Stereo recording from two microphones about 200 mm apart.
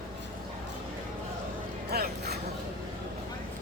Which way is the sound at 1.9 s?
55° right (ahead or behind).